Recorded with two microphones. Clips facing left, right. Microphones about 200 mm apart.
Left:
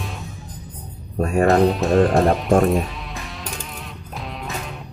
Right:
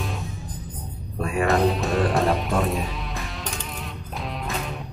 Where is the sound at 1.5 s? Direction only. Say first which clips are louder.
Left 4 dB; centre (ahead or behind).